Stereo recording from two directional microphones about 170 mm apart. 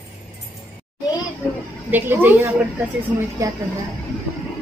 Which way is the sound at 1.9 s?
10° right (ahead or behind).